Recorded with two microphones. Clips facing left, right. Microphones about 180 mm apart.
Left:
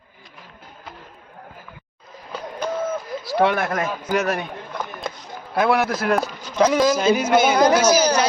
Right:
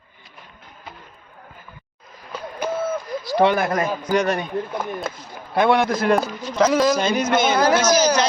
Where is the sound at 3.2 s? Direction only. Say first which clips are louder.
Right 2 dB; centre (ahead or behind).